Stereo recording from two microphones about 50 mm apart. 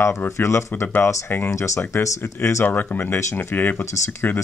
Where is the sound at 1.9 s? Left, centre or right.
Left.